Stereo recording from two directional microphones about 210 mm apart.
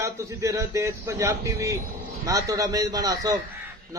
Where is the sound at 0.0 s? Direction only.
15° right (ahead or behind).